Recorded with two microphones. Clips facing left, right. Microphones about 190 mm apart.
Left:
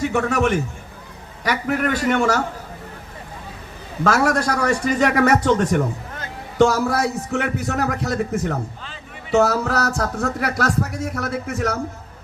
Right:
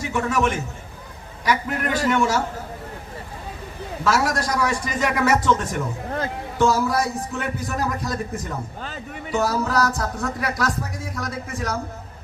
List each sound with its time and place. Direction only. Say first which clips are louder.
0.0 s a man's voice: left 3 dB; 65° left (ahead or behind)
4.0 s a man's voice: left 4 dB; 55° left (ahead or behind); by 11.8 s 70° left (ahead or behind)